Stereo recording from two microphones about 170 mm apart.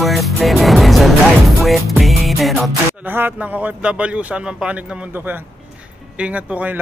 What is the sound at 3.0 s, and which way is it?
A man's voice, 10° right (ahead or behind).